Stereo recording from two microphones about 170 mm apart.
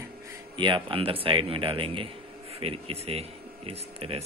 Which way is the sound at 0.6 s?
30° right (ahead or behind).